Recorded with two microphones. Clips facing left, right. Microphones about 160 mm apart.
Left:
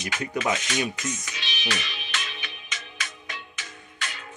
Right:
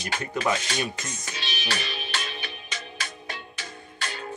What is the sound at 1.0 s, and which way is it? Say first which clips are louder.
Music: left 3 dB; 35° right (ahead or behind).